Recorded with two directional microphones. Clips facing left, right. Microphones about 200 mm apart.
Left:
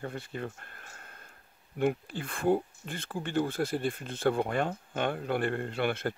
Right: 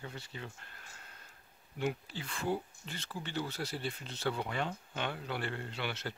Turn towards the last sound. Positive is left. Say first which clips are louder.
# left 9 dB
turn(degrees=50)  # may be behind; listen again after turning